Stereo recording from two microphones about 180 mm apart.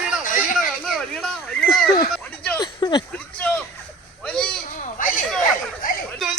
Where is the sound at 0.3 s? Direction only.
50° left (ahead or behind).